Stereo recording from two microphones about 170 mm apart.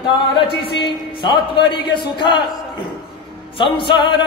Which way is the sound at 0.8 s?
25° left (ahead or behind).